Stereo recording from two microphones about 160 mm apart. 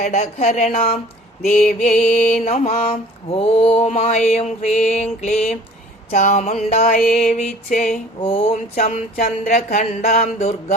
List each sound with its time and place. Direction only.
0.0 s mantra: 45° left (ahead or behind)
1.5 s music: 60° left (ahead or behind)
2.4 s mantra: 40° left (ahead or behind)
6.9 s music: 60° left (ahead or behind)
8.2 s speech: 35° left (ahead or behind)
8.8 s mantra: 45° left (ahead or behind)